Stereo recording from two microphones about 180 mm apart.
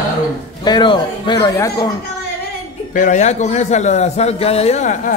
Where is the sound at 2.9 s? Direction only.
45° left (ahead or behind).